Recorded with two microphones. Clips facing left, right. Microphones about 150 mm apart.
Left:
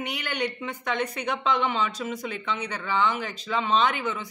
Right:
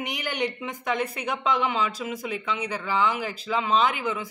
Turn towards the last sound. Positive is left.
turn(degrees=-10)  # may be behind; listen again after turning